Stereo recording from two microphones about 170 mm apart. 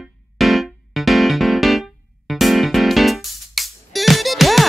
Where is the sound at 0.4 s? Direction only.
Centre (ahead or behind).